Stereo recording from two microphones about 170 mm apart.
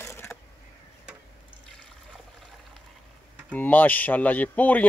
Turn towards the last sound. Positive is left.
turn(degrees=10)  # may be behind; listen again after turning